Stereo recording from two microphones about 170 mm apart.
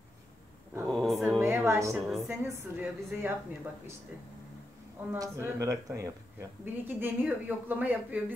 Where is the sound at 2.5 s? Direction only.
15° right (ahead or behind).